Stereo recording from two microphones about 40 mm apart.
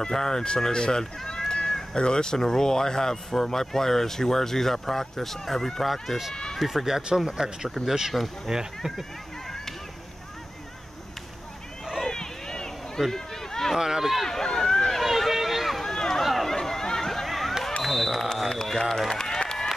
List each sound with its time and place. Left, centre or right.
0.0 s speech: centre
1.5 s cat: centre
2.0 s speech: left; by 6.1 s centre
6.3 s speech: centre
6.6 s speech: centre
11.8 s a sound: centre
12.1 s run: centre
13.7 s speech: centre
14.1 s run: centre
15.0 s run: centre
15.9 s run: centre
16.4 s a sound: centre
19.0 s run: centre
19.4 s a sound: centre